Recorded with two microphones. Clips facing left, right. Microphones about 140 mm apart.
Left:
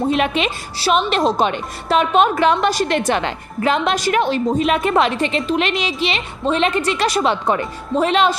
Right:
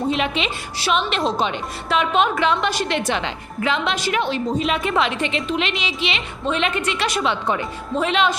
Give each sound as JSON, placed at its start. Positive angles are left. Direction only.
{"t": 0.1, "sound": "a woman's voice", "side_deg": 50}